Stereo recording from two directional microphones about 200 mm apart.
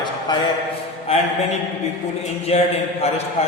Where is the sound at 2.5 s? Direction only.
35° left (ahead or behind).